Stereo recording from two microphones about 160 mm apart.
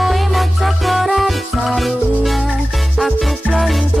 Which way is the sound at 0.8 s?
Centre (ahead or behind).